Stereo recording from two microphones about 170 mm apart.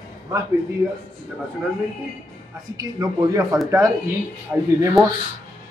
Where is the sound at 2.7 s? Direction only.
20° right (ahead or behind).